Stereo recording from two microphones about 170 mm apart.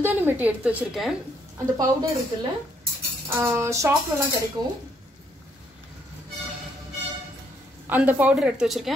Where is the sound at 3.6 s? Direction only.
15° right (ahead or behind).